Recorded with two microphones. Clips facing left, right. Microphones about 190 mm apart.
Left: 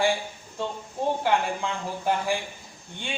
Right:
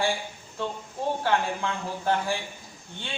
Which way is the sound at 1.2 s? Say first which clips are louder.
Left 1 dB; 15° left (ahead or behind).